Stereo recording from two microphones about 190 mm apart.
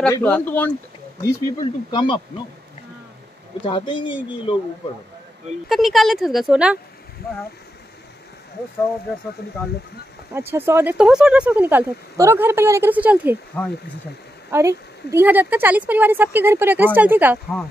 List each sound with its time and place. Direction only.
0.1 s speech: 10° left (ahead or behind)
1.3 s speech: 25° left (ahead or behind)
3.6 s speech: 25° left (ahead or behind)
5.7 s a woman's voice: centre (ahead or behind)
10.3 s speech: 10° right (ahead or behind)
14.5 s speech: 15° right (ahead or behind)